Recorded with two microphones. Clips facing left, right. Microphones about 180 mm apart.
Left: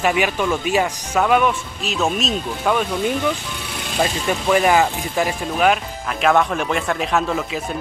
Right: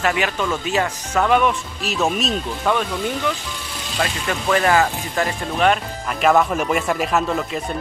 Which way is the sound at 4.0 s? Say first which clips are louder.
Left 3 dB; 15° left (ahead or behind).